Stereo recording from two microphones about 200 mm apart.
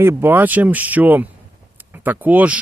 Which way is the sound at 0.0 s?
10° right (ahead or behind).